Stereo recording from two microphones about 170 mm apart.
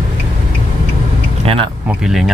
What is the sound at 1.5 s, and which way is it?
Speech, 35° right (ahead or behind).